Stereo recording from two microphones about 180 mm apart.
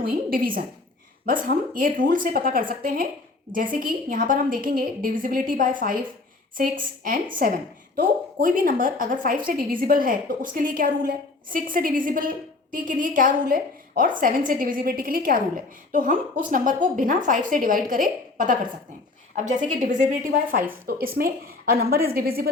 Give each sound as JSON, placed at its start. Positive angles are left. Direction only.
{"t": 0.1, "sound": "a woman's voice", "side_deg": -55}